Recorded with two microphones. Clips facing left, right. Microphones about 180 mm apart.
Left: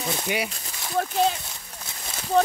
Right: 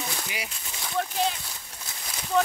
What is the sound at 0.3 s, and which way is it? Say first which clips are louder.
Speech: left 10 dB; 60° left (ahead or behind).